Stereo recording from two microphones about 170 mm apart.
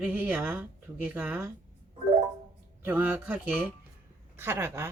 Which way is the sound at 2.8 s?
10° right (ahead or behind).